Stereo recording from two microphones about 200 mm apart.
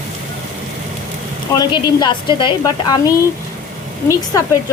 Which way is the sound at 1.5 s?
20° left (ahead or behind).